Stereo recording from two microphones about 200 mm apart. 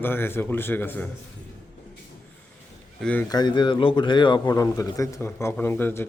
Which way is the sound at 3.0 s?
5° left (ahead or behind).